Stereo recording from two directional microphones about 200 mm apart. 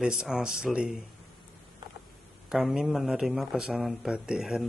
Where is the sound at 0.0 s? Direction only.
5° right (ahead or behind).